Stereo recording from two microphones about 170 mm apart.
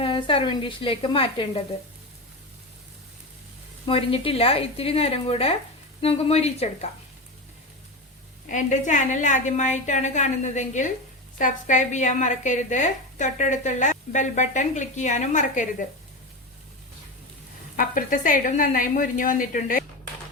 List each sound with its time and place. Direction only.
0.0 s speech: 30° left (ahead or behind)
3.8 s speech: 30° left (ahead or behind)
8.4 s speech: 45° left (ahead or behind)
17.7 s speech: 50° left (ahead or behind)